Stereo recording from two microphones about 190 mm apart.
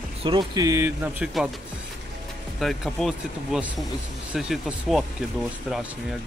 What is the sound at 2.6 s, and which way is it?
Speech, centre (ahead or behind).